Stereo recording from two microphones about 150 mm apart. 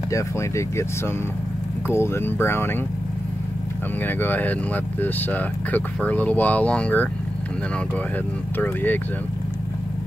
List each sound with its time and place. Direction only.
0.1 s speech: 20° left (ahead or behind)
4.0 s speech: 10° left (ahead or behind)
8.5 s speech: 10° left (ahead or behind)